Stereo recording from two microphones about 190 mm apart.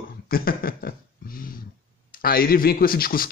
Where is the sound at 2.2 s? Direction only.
50° left (ahead or behind).